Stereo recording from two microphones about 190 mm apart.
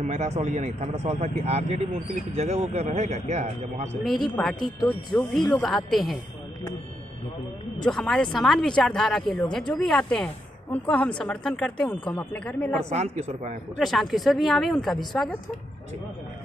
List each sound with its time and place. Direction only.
0.0 s speech: 40° right (ahead or behind)
4.0 s speech: centre (ahead or behind)
7.8 s speech: 5° left (ahead or behind)
12.9 s speech: 35° right (ahead or behind)
13.7 s speech: centre (ahead or behind)